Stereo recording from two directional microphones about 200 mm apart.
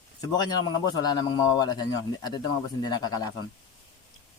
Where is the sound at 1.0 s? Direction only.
20° left (ahead or behind).